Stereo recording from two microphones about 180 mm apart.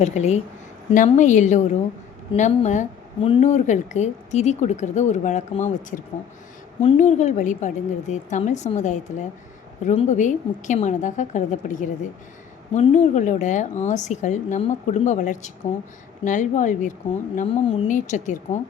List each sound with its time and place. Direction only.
0.0 s a woman's voice: 35° left (ahead or behind)
3.4 s a woman's voice: 40° left (ahead or behind)